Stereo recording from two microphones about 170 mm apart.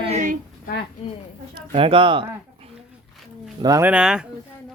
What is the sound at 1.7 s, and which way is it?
Speech, 30° right (ahead or behind).